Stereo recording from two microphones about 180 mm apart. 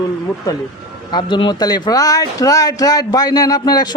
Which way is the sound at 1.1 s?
25° left (ahead or behind).